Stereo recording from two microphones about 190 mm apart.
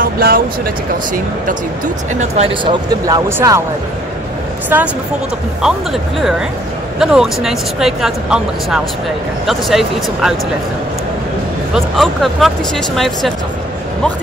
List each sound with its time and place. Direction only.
0.0 s speech: 50° right (ahead or behind)
2.1 s speech: 35° right (ahead or behind); by 3.6 s 15° right (ahead or behind)
4.7 s speech: 10° right (ahead or behind)
11.7 s speech: centre (ahead or behind)